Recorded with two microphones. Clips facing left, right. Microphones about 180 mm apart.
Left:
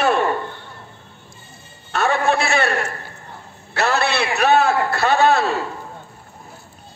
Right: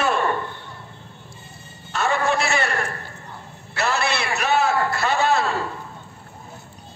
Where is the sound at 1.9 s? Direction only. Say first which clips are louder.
Left 3 dB; 60° left (ahead or behind).